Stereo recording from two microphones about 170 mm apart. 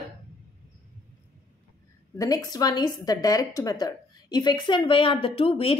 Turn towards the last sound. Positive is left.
turn(degrees=35)  # may be behind; listen again after turning